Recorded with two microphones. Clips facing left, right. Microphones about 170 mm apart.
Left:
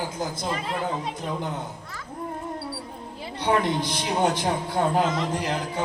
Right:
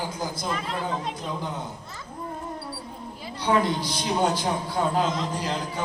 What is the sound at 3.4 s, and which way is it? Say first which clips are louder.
Speech: even; 20° left (ahead or behind).